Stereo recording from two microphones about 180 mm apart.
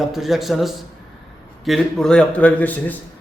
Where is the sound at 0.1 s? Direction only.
Centre (ahead or behind).